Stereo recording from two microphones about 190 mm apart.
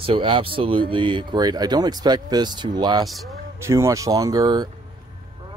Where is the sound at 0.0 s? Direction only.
30° right (ahead or behind).